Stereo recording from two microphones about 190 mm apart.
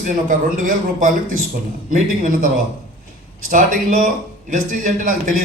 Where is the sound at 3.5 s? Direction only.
45° right (ahead or behind).